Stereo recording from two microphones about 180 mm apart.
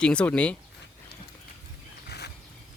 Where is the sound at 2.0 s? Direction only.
65° left (ahead or behind).